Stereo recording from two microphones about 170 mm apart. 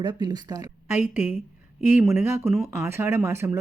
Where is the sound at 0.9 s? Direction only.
10° right (ahead or behind).